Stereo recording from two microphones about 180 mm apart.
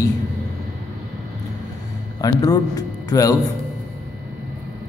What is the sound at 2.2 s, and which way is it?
A man's voice, 20° left (ahead or behind).